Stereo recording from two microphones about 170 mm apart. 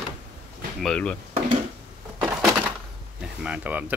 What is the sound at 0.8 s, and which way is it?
Speech, 5° left (ahead or behind).